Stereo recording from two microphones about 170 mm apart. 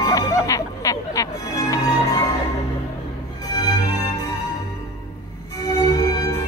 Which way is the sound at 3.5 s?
20° left (ahead or behind).